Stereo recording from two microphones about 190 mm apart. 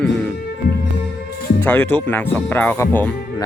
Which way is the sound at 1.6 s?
10° left (ahead or behind).